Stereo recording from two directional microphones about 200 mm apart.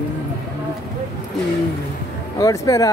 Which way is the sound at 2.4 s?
15° left (ahead or behind).